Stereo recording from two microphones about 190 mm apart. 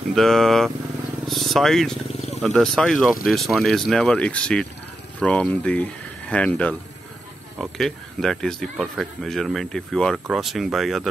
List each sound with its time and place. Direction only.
0.1 s speech: centre (ahead or behind)
2.0 s purr: 35° left (ahead or behind)
2.4 s speech: centre (ahead or behind)